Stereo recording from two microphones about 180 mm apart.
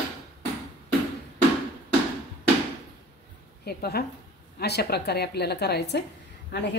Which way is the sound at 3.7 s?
60° left (ahead or behind).